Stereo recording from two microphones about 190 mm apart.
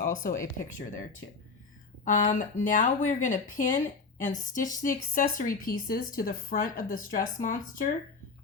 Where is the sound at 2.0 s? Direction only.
40° left (ahead or behind).